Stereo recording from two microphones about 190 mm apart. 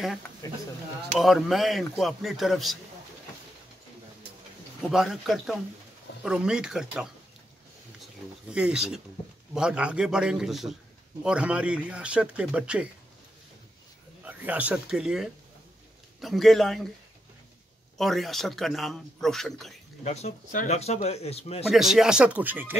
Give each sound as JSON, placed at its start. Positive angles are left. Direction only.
{"t": 0.4, "sound": "speech", "side_deg": 15}
{"t": 1.2, "sound": "a man's voice", "side_deg": 0}
{"t": 4.9, "sound": "a man's voice", "side_deg": 0}
{"t": 8.5, "sound": "a man's voice", "side_deg": -5}
{"t": 14.2, "sound": "a man's voice", "side_deg": -10}
{"t": 17.9, "sound": "a man's voice", "side_deg": 0}
{"t": 20.0, "sound": "speech", "side_deg": 35}
{"t": 21.6, "sound": "a man's voice", "side_deg": 0}